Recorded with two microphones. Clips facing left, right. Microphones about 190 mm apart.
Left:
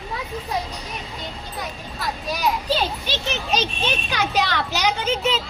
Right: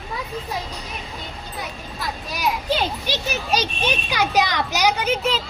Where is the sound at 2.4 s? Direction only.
10° right (ahead or behind).